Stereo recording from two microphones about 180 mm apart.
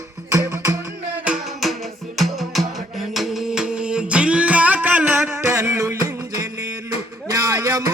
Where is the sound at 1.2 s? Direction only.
Centre (ahead or behind).